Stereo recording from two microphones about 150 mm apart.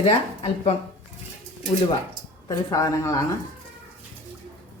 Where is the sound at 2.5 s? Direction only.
20° left (ahead or behind).